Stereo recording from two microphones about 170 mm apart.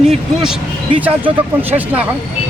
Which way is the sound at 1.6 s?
10° right (ahead or behind).